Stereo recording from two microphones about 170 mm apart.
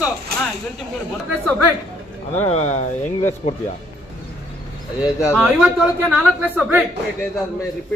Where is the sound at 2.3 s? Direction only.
40° left (ahead or behind).